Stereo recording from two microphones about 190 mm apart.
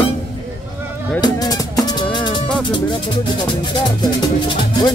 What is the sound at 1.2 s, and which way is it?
Music, 20° left (ahead or behind).